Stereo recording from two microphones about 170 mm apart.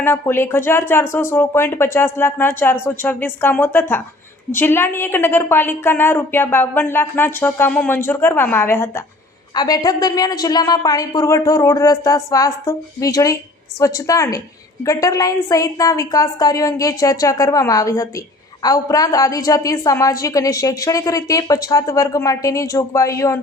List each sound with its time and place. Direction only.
0.0 s a woman's voice: 15° left (ahead or behind)